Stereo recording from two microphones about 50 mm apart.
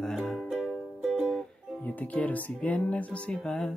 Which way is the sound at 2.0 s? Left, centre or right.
Left.